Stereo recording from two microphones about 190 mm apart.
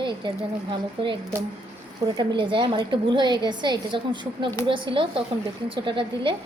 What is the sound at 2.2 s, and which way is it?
A woman's voice, 25° right (ahead or behind).